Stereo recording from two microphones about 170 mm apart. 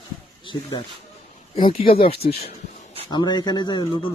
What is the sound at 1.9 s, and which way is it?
Speech, 35° left (ahead or behind).